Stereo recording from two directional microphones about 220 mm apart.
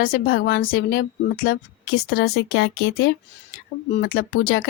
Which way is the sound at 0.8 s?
65° left (ahead or behind).